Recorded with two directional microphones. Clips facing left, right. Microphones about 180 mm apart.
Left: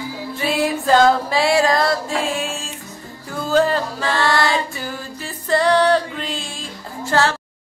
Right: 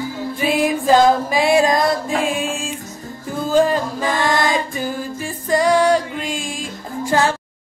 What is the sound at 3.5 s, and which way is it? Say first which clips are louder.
Music: right 1 dB; 10° right (ahead or behind).